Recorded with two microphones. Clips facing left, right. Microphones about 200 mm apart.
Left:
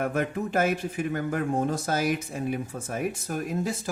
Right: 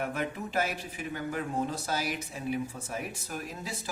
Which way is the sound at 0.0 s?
50° left (ahead or behind).